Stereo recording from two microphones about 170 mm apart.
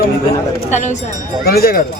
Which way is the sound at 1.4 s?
65° left (ahead or behind).